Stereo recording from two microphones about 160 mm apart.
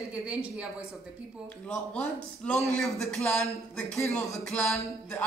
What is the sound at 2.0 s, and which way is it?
Speech, 5° left (ahead or behind).